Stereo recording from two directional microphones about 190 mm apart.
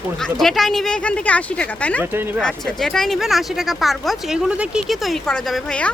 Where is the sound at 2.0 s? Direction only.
10° right (ahead or behind).